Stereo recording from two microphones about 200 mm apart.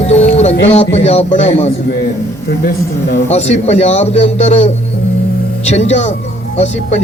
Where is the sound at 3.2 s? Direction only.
35° left (ahead or behind).